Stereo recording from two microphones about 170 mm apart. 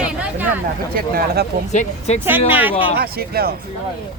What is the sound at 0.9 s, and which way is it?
Speech, 65° right (ahead or behind).